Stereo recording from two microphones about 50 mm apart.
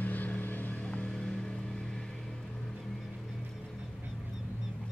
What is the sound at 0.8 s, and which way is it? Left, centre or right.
Vehicle, left.